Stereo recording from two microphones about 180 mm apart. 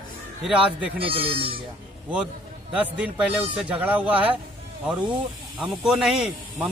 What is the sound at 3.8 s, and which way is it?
Speech, 10° right (ahead or behind).